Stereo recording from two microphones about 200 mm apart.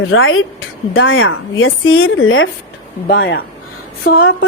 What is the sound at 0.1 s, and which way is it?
Speech, 85° left.